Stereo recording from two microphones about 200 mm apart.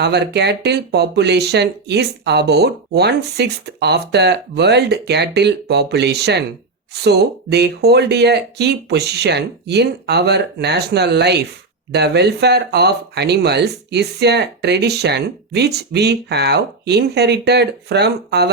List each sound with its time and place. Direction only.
0.0 s speech: 55° right (ahead or behind)